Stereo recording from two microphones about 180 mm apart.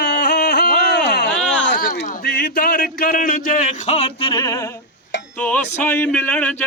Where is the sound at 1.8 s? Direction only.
55° left (ahead or behind); by 4.7 s 20° left (ahead or behind).